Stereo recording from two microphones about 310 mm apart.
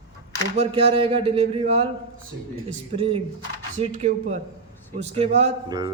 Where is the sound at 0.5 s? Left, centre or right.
Centre.